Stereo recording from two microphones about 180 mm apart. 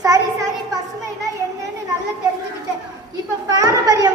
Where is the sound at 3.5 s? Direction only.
20° right (ahead or behind).